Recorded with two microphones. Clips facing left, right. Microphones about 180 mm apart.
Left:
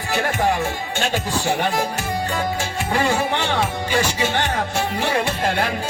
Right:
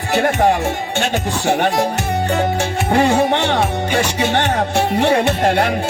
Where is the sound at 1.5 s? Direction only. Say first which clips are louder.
Right 6 dB; 70° right (ahead or behind).